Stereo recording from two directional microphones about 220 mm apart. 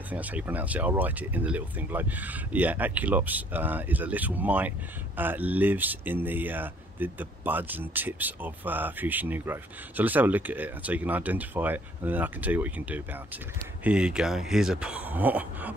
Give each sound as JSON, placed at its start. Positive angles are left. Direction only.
{"t": 0.1, "sound": "speech", "side_deg": -5}